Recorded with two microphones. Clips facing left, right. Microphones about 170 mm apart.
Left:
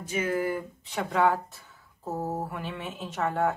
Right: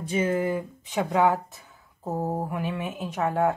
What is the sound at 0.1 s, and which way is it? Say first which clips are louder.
Speech: right 3 dB; 25° right (ahead or behind).